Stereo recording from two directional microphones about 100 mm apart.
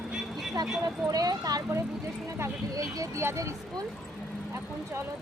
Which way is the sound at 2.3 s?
30° right (ahead or behind).